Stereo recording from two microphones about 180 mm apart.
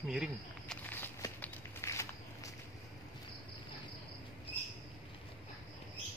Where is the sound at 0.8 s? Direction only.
10° left (ahead or behind).